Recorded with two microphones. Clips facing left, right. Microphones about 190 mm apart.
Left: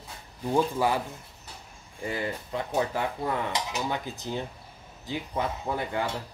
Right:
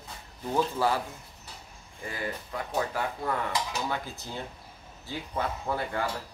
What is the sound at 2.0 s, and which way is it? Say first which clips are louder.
Dishes: left 4 dB; 25° left (ahead or behind).